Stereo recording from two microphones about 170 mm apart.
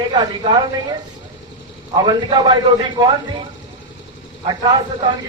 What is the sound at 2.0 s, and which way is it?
Speech, 25° right (ahead or behind).